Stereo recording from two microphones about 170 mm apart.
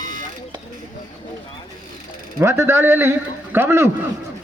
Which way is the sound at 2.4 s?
15° right (ahead or behind).